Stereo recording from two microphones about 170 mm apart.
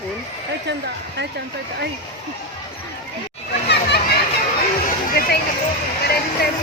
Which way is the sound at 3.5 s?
80° left.